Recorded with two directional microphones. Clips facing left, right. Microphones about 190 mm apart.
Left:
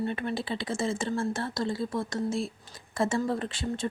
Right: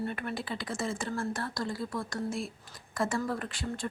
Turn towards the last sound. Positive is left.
turn(degrees=25)  # may be behind; listen again after turning